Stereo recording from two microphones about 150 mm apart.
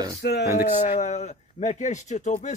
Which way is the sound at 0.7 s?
50° left (ahead or behind).